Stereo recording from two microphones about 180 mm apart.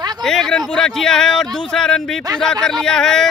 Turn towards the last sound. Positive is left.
turn(degrees=5)  # may be behind; listen again after turning